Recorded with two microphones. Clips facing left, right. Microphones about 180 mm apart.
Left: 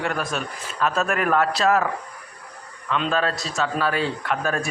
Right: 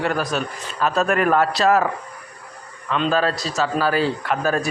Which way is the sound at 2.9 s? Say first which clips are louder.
Right 3 dB; centre (ahead or behind).